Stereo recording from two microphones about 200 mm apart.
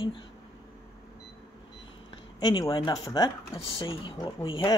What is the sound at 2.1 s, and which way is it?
Speech, 20° left (ahead or behind).